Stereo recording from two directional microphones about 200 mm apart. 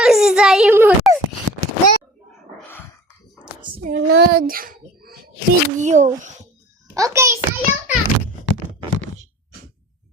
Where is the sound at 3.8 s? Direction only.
45° right (ahead or behind).